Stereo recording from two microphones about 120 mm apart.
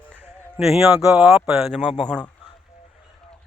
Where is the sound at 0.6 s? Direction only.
5° right (ahead or behind).